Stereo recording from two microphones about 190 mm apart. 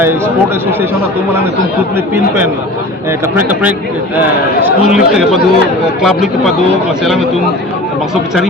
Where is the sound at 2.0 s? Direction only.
10° right (ahead or behind).